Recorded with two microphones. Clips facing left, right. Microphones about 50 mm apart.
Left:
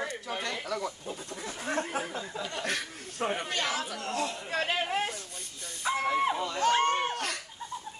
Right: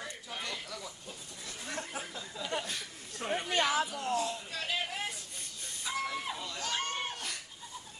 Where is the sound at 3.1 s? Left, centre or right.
Left.